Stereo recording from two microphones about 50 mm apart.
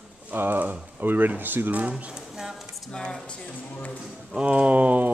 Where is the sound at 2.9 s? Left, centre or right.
Centre.